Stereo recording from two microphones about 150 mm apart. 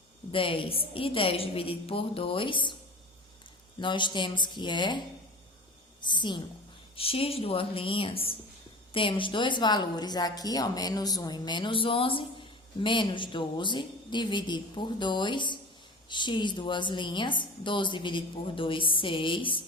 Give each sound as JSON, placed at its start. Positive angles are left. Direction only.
{"t": 0.3, "sound": "a woman's voice", "side_deg": 35}
{"t": 3.8, "sound": "a woman's voice", "side_deg": 30}
{"t": 6.1, "sound": "a woman's voice", "side_deg": 30}